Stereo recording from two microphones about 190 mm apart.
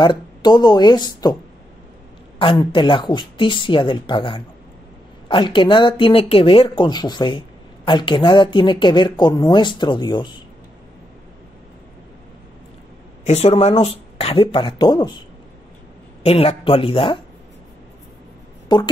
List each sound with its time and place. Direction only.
0.0 s speech: 25° left (ahead or behind)
2.7 s speech: 25° left (ahead or behind)
13.2 s speech: 35° left (ahead or behind)
16.3 s speech: 30° left (ahead or behind)
18.7 s speech: 25° left (ahead or behind)